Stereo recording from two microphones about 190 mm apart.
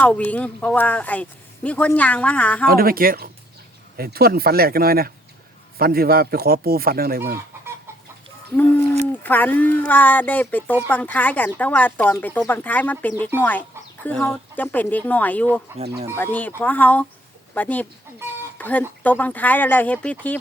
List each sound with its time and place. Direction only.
0.0 s speech: 10° left (ahead or behind)
2.6 s a man's voice: 50° right (ahead or behind)
9.2 s speech: 10° left (ahead or behind)